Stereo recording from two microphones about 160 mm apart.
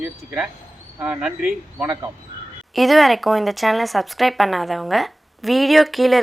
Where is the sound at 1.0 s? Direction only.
5° right (ahead or behind).